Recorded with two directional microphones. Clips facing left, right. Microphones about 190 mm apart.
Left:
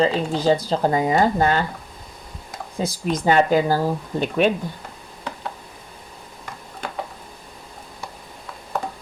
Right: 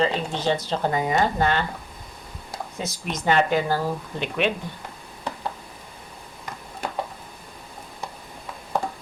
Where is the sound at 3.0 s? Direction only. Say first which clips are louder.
Left 4 dB; 35° left (ahead or behind).